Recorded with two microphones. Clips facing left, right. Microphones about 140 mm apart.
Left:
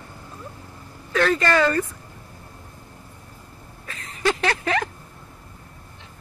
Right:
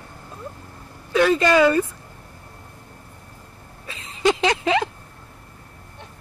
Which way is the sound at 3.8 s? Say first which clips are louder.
Right 4 dB; 20° right (ahead or behind).